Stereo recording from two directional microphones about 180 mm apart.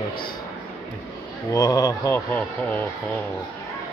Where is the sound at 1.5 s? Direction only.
20° left (ahead or behind).